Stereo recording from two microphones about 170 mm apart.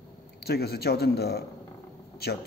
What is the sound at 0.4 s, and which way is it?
A man's voice, 70° left (ahead or behind).